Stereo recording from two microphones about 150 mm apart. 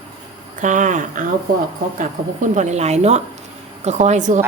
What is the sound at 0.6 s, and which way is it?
Speech, 60° right (ahead or behind).